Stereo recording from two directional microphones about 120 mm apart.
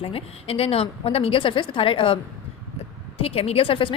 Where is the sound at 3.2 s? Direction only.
55° left (ahead or behind).